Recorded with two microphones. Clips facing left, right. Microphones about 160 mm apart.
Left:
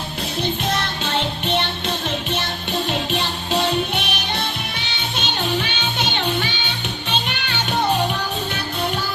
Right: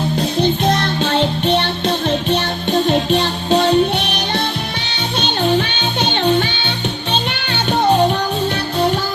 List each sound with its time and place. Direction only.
1.0 s music: 35° right (ahead or behind)